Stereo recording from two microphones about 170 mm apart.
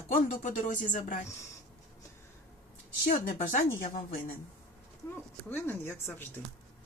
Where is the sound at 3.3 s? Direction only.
50° left (ahead or behind).